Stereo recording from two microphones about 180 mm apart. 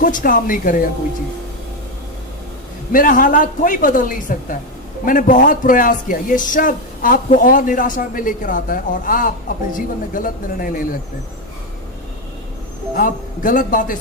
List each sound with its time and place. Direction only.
0.0 s a man's voice: 50° left (ahead or behind)
2.9 s a man's voice: 50° left (ahead or behind)
12.9 s a man's voice: 50° left (ahead or behind)